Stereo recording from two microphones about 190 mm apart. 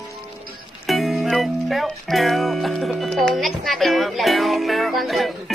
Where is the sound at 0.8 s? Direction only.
Centre (ahead or behind).